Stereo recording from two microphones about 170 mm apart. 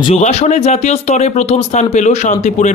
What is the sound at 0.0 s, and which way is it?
Speech, 40° left (ahead or behind).